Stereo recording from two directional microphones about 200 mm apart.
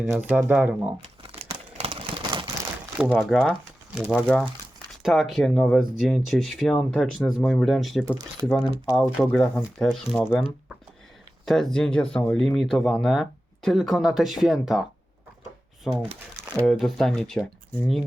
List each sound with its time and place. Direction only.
0.0 s speech: 5° right (ahead or behind)
1.0 s a sound: 30° right (ahead or behind)
3.0 s speech: 5° right (ahead or behind)
11.4 s speech: centre (ahead or behind)
15.9 s speech: centre (ahead or behind)